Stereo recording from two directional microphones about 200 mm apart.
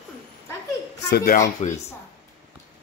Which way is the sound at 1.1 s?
45° left (ahead or behind).